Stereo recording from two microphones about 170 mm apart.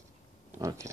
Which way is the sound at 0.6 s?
20° right (ahead or behind).